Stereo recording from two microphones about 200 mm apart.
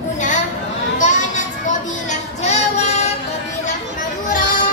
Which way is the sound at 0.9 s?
40° left (ahead or behind).